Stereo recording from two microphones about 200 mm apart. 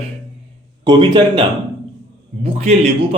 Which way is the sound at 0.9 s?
20° right (ahead or behind).